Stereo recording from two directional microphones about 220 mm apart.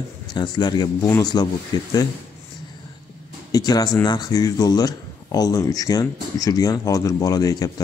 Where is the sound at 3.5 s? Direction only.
15° left (ahead or behind).